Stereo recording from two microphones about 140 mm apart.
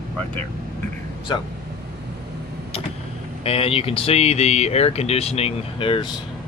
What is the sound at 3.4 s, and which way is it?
Speech, 45° left (ahead or behind).